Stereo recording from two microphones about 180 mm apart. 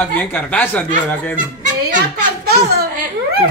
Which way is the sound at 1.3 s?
45° right (ahead or behind).